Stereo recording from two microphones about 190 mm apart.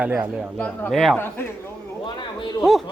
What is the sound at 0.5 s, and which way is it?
Speech, 10° left (ahead or behind).